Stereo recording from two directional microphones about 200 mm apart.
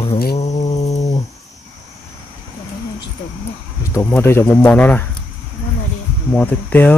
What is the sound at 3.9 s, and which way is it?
Speech, 10° left (ahead or behind).